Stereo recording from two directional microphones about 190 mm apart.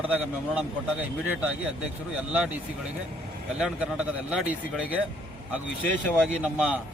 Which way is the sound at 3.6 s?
5° right (ahead or behind).